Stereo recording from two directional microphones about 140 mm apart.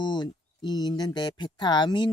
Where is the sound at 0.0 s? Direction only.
30° left (ahead or behind).